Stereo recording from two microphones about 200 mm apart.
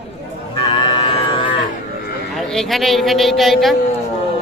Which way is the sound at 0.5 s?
25° left (ahead or behind).